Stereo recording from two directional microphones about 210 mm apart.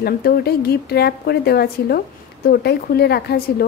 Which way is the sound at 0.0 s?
50° left (ahead or behind).